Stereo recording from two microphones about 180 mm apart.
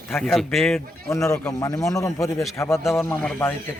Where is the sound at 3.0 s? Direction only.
10° left (ahead or behind).